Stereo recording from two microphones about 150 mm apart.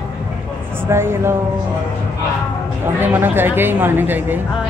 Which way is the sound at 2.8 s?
15° right (ahead or behind).